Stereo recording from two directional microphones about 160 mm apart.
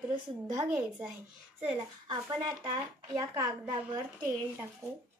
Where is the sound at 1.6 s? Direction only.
25° right (ahead or behind).